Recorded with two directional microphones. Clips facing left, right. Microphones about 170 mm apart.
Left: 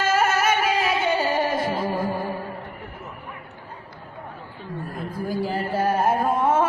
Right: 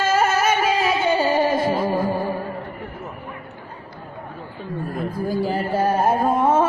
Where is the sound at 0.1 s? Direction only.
20° right (ahead or behind).